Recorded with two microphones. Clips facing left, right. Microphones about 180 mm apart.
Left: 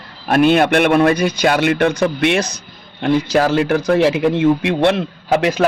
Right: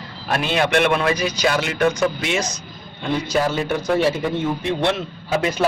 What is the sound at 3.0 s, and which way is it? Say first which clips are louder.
A man's voice: left 6 dB; 80° left.